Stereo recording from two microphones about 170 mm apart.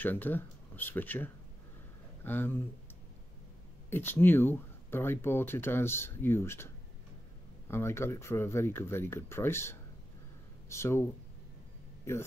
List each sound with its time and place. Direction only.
0.0 s speech: 10° left (ahead or behind)
3.9 s speech: 10° left (ahead or behind)